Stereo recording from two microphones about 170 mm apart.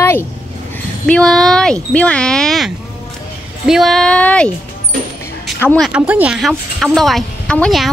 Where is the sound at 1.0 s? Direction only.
5° left (ahead or behind).